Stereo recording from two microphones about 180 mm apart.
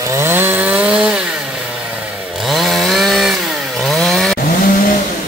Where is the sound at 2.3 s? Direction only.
Centre (ahead or behind).